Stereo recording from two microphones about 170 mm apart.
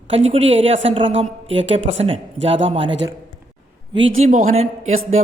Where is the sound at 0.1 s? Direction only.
40° right (ahead or behind).